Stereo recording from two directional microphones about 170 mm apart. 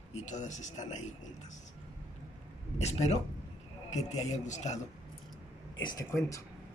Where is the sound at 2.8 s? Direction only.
40° left (ahead or behind).